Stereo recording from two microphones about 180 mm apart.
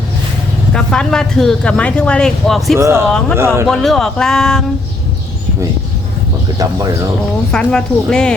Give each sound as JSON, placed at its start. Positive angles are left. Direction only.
{"t": 0.7, "sound": "speech", "side_deg": 5}
{"t": 2.7, "sound": "speech", "side_deg": -15}
{"t": 3.1, "sound": "speech", "side_deg": 5}
{"t": 3.3, "sound": "speech", "side_deg": -15}
{"t": 3.7, "sound": "speech", "side_deg": 5}
{"t": 6.6, "sound": "speech", "side_deg": -20}
{"t": 7.5, "sound": "speech", "side_deg": 5}